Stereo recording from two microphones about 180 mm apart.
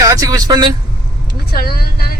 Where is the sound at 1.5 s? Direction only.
60° left (ahead or behind).